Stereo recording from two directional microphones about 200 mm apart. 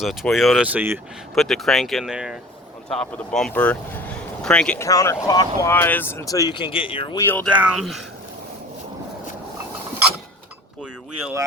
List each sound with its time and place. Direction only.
0.0 s speech: centre (ahead or behind)
4.9 s speech: 15° left (ahead or behind)
7.2 s speech: 10° left (ahead or behind)
7.5 s speech: 5° right (ahead or behind)